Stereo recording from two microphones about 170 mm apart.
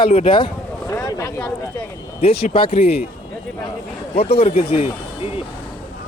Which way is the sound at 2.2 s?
35° left (ahead or behind).